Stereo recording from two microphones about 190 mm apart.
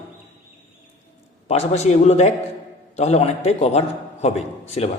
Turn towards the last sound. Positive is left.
turn(degrees=35)  # may be behind; listen again after turning